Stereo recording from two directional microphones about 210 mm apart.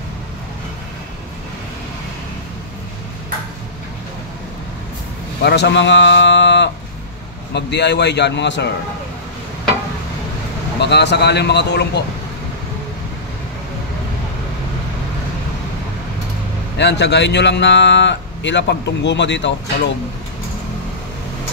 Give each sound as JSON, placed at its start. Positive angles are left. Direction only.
{"t": 5.4, "sound": "speech", "side_deg": 55}
{"t": 10.8, "sound": "speech", "side_deg": 55}
{"t": 16.7, "sound": "speech", "side_deg": 55}